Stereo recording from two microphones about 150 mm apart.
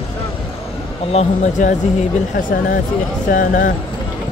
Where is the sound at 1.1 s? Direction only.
50° left (ahead or behind).